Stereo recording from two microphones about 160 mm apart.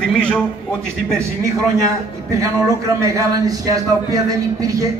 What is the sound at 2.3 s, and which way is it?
A man's voice, 20° right (ahead or behind).